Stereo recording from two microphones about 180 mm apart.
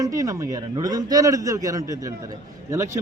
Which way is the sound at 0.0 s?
20° right (ahead or behind).